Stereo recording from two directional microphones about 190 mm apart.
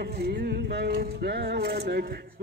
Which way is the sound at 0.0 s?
55° right (ahead or behind).